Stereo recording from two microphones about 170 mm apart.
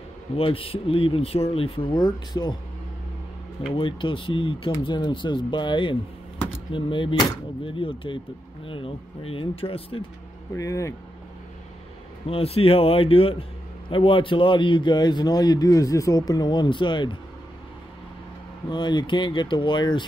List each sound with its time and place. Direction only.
0.4 s speech: 35° left (ahead or behind)
3.7 s a man's voice: 30° left (ahead or behind)
10.5 s speech: 20° left (ahead or behind)
12.3 s a man's voice: 35° left (ahead or behind)
18.7 s a man's voice: 25° left (ahead or behind)